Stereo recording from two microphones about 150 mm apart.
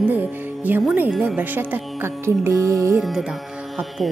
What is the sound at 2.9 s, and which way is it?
A woman's voice, 5° right (ahead or behind).